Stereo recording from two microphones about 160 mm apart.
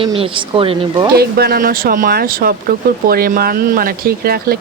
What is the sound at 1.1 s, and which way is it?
Speech, 80° right.